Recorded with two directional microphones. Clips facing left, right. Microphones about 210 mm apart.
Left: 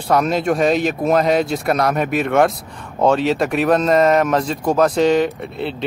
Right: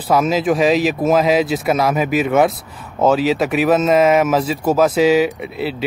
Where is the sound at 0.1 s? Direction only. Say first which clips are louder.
Right 1 dB; centre (ahead or behind).